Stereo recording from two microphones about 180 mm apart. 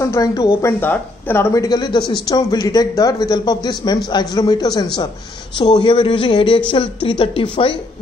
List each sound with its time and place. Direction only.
0.0 s speech: 15° left (ahead or behind)